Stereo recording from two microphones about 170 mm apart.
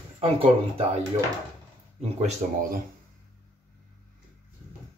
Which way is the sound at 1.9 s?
35° right (ahead or behind).